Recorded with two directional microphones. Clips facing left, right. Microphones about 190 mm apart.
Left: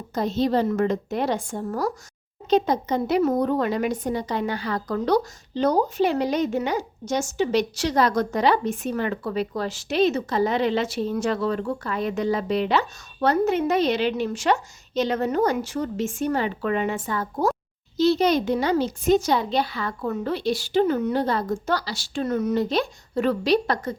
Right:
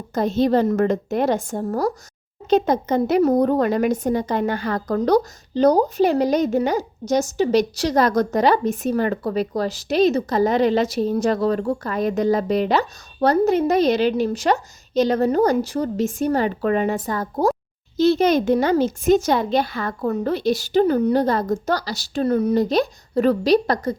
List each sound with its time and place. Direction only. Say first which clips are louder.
0.1 s a child's voice: right 4 dB; 50° right (ahead or behind)
2.5 s speech: right 3 dB; 50° right (ahead or behind)
17.9 s a child's voice: right 3 dB; 50° right (ahead or behind)